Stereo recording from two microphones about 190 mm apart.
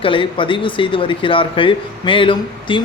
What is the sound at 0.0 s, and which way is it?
Speech, 25° left (ahead or behind).